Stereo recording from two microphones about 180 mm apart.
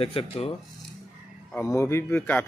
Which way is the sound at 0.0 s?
30° left (ahead or behind).